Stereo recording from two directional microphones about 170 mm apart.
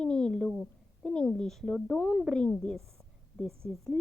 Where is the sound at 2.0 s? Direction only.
15° left (ahead or behind).